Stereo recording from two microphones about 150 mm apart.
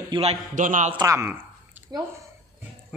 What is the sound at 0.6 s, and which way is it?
Speech, 60° right (ahead or behind).